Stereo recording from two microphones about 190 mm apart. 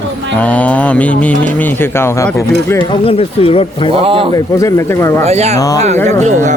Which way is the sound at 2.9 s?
30° left (ahead or behind).